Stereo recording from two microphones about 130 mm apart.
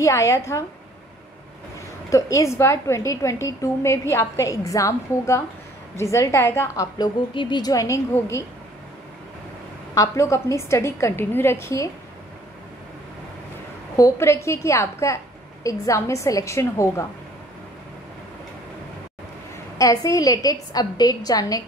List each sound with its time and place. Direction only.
0.0 s a woman's voice: 25° left (ahead or behind)
2.0 s a woman's voice: 25° left (ahead or behind)
7.0 s a woman's voice: 35° left (ahead or behind)
9.9 s a woman's voice: 20° left (ahead or behind)
13.9 s a woman's voice: 25° left (ahead or behind)
19.8 s a woman's voice: 25° left (ahead or behind)